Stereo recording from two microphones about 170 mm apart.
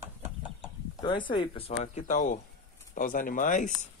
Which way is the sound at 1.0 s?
30° left (ahead or behind).